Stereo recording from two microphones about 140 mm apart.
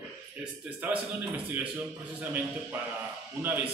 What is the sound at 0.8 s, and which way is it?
Speech, 10° right (ahead or behind).